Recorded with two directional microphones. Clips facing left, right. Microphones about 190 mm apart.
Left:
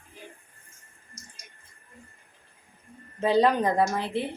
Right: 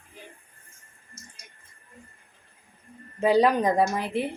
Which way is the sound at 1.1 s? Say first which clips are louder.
Right 1 dB; 35° left (ahead or behind).